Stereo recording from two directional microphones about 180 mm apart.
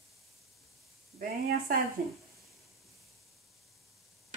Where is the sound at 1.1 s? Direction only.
55° right (ahead or behind).